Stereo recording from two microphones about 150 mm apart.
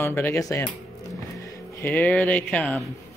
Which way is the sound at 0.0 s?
15° left (ahead or behind).